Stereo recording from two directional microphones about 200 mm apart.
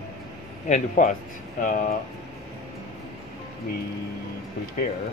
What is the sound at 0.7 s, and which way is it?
Speech, 40° left (ahead or behind).